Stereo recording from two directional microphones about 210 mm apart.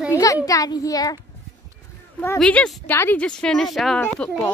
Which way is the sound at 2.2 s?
10° left (ahead or behind).